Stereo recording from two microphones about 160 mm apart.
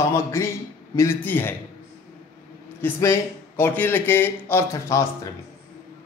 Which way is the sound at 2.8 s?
15° left (ahead or behind).